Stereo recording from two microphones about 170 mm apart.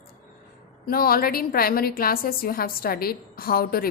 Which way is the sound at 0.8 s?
60° left (ahead or behind).